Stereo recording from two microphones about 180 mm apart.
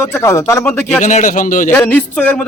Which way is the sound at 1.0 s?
45° left (ahead or behind).